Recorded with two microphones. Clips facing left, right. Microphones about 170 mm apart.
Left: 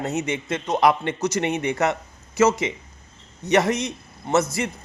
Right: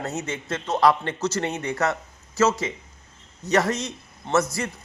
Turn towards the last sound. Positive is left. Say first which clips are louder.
# left 2 dB
turn(degrees=20)  # may be behind; listen again after turning